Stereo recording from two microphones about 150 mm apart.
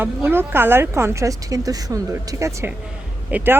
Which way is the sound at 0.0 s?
15° right (ahead or behind).